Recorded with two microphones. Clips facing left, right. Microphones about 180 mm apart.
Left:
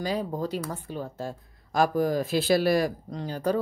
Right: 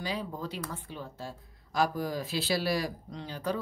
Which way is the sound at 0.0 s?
45° left (ahead or behind).